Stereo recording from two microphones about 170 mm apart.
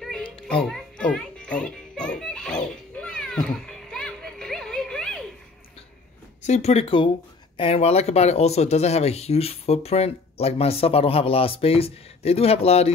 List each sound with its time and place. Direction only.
0.0 s music: 5° left (ahead or behind)
6.4 s speech: 40° left (ahead or behind)